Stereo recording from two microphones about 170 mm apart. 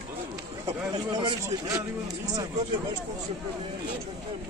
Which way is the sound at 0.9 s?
25° right (ahead or behind).